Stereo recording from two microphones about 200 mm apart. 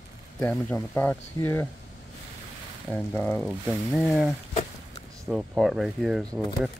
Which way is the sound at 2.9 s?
5° left (ahead or behind).